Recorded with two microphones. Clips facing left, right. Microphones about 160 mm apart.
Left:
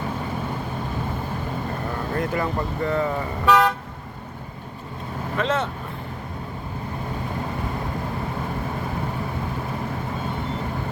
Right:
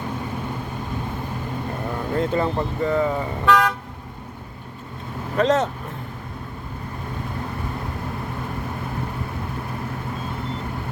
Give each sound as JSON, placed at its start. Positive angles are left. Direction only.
{"t": 2.1, "sound": "speech", "side_deg": -25}
{"t": 3.4, "sound": "vehicle", "side_deg": 5}
{"t": 5.4, "sound": "speech", "side_deg": -40}